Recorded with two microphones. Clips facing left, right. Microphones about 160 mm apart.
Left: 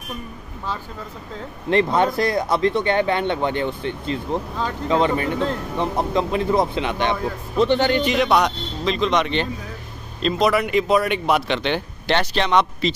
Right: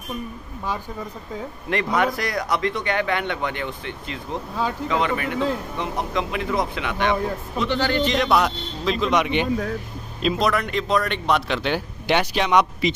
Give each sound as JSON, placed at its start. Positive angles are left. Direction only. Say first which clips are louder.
{"t": 1.7, "sound": "speech", "louder": "left 4 dB", "side_deg": 30}
{"t": 8.3, "sound": "speech", "louder": "left 1 dB", "side_deg": -5}
{"t": 10.2, "sound": "speech", "louder": "left 3 dB", "side_deg": 5}